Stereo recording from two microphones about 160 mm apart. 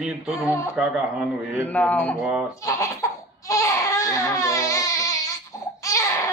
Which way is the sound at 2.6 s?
20° left (ahead or behind).